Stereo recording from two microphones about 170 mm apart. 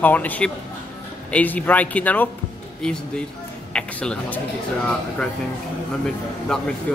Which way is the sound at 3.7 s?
5° left (ahead or behind).